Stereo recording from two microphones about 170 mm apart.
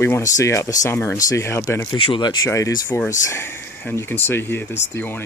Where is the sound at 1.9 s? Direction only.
30° left (ahead or behind).